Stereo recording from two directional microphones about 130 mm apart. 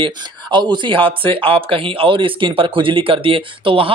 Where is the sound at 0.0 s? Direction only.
40° right (ahead or behind).